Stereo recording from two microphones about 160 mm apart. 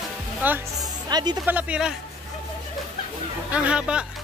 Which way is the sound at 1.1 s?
25° right (ahead or behind).